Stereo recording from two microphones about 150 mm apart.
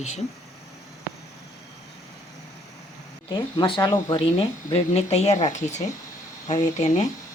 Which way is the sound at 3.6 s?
30° left (ahead or behind).